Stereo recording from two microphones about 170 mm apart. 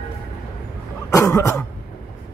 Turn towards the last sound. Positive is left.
turn(degrees=20)  # may be behind; listen again after turning